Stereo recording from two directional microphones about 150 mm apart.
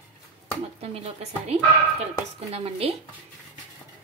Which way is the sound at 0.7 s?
40° right (ahead or behind).